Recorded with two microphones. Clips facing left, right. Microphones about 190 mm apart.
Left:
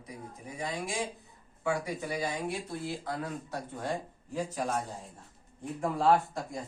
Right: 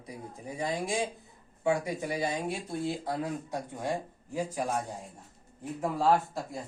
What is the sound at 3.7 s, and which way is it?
A man's voice, 10° right (ahead or behind).